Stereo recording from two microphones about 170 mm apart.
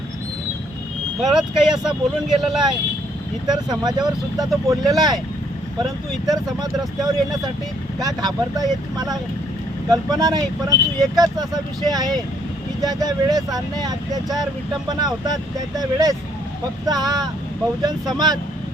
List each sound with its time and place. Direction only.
1.2 s speech: 5° right (ahead or behind)
3.4 s speech: 25° right (ahead or behind)
9.9 s speech: 20° right (ahead or behind)